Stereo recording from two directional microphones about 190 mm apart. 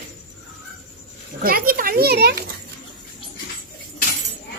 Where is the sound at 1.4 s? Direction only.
50° right (ahead or behind).